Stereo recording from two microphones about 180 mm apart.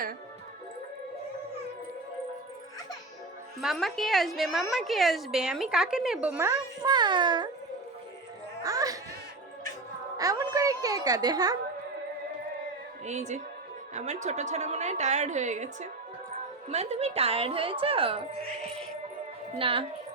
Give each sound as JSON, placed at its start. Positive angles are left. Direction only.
{"t": 3.6, "sound": "a woman's voice", "side_deg": 0}
{"t": 8.6, "sound": "speech", "side_deg": -20}
{"t": 10.2, "sound": "music", "side_deg": -20}
{"t": 13.1, "sound": "a woman's voice", "side_deg": -40}
{"t": 19.5, "sound": "a woman's voice", "side_deg": -30}